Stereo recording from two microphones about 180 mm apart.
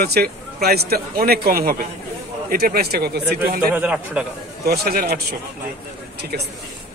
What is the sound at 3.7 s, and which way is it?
Speech, 10° right (ahead or behind).